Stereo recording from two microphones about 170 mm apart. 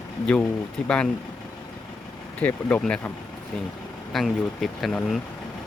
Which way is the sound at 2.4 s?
10° left (ahead or behind).